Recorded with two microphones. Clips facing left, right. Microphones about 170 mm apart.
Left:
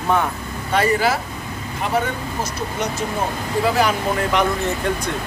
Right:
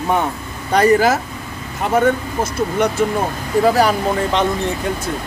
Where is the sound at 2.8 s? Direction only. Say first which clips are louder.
Right 7 dB; 55° right (ahead or behind).